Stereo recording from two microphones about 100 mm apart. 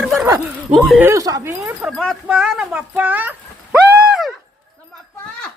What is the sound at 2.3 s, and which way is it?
Speech, 5° right (ahead or behind).